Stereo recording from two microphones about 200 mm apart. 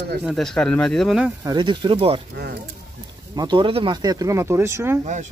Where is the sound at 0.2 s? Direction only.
Centre (ahead or behind).